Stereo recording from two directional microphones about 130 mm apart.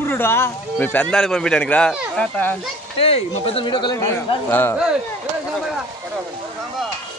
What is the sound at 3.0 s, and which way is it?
Speech, 50° left (ahead or behind).